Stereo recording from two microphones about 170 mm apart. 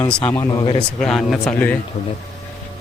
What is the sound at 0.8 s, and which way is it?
Speech, 5° left (ahead or behind).